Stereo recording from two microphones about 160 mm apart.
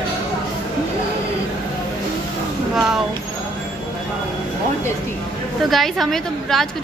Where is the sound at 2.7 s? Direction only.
5° right (ahead or behind).